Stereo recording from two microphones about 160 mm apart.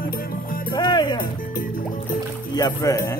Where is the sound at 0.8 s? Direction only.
25° left (ahead or behind).